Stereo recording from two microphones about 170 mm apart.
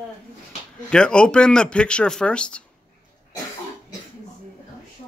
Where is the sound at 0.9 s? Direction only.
5° left (ahead or behind).